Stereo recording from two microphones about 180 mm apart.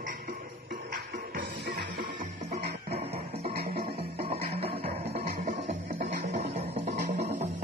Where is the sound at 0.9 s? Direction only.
60° right (ahead or behind).